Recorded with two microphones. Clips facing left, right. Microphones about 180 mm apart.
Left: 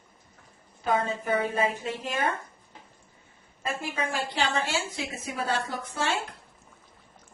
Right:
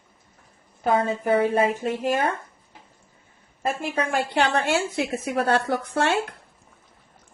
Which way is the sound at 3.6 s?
55° right (ahead or behind).